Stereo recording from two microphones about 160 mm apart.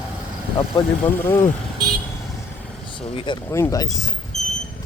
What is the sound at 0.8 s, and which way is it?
Speech, 25° left (ahead or behind).